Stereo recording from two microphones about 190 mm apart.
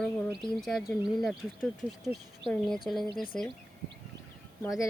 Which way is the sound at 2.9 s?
10° left (ahead or behind).